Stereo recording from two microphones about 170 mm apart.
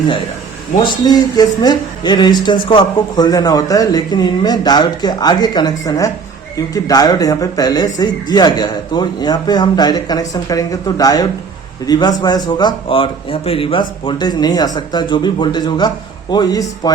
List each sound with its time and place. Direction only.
0.9 s speech: 25° left (ahead or behind)